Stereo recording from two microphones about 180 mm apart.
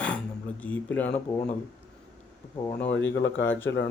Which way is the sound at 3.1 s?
90° left.